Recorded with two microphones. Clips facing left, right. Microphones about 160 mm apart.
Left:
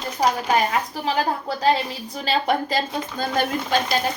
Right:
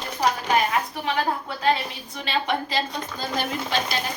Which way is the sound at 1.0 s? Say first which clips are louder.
Left 2 dB; 35° left (ahead or behind).